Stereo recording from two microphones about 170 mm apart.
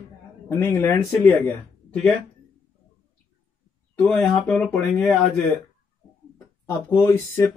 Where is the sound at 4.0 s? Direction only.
5° left (ahead or behind).